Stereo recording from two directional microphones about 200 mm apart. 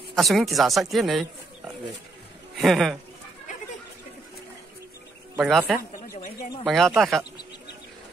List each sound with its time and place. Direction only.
0.1 s a man's voice: centre (ahead or behind)
5.3 s a man's voice: 10° right (ahead or behind)